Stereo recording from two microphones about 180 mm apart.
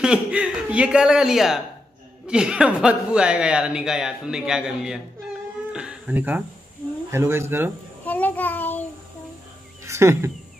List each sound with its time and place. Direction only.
0.0 s speech: 5° right (ahead or behind)
8.0 s child singing: 10° left (ahead or behind)
9.8 s a sound: 15° right (ahead or behind)